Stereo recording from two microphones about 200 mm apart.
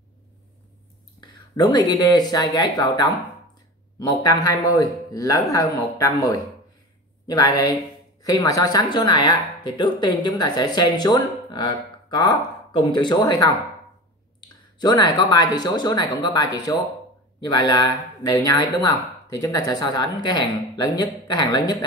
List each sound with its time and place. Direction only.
1.2 s speech: 20° left (ahead or behind)
14.8 s speech: 20° left (ahead or behind)